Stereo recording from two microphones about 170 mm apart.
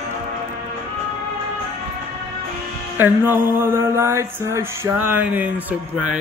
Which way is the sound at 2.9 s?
10° right (ahead or behind).